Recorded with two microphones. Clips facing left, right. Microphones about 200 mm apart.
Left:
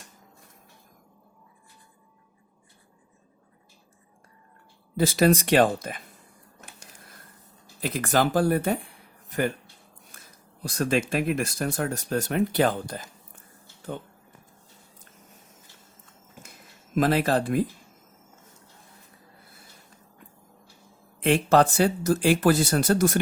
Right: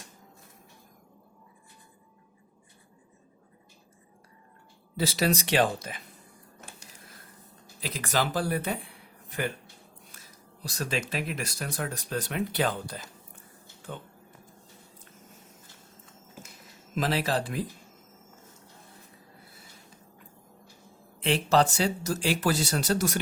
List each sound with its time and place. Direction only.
4.9 s speech: 50° left (ahead or behind)
7.8 s speech: 50° left (ahead or behind)
10.1 s a sound: 50° left (ahead or behind)
11.1 s speech: 50° left (ahead or behind)
16.9 s speech: 50° left (ahead or behind)
21.2 s speech: 55° left (ahead or behind)